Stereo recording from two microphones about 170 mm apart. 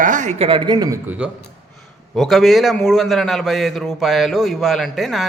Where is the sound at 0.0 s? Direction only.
50° right (ahead or behind); by 0.9 s 25° right (ahead or behind).